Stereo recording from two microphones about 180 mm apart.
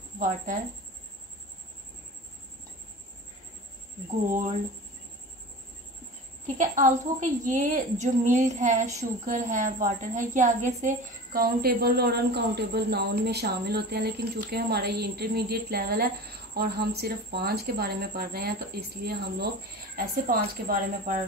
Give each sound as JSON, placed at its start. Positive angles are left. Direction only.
{"t": 0.2, "sound": "a woman's voice", "side_deg": -45}
{"t": 6.4, "sound": "a woman's voice", "side_deg": -45}